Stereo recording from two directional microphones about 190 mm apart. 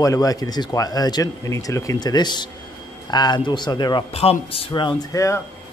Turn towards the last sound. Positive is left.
turn(degrees=15)  # may be behind; listen again after turning